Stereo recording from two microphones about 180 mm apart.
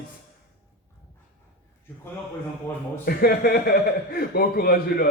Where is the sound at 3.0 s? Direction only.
55° left (ahead or behind).